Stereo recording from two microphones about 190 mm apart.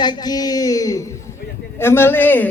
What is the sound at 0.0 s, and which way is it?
A man's voice, 20° left (ahead or behind).